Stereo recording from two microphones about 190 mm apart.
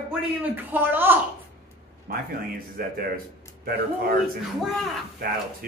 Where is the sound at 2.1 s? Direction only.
50° right (ahead or behind).